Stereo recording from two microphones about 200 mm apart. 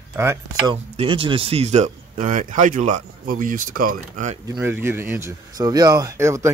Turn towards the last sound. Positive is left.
turn(degrees=-15)  # may be behind; listen again after turning